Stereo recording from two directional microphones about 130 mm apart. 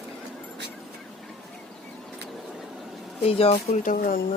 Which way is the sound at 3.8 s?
90° left.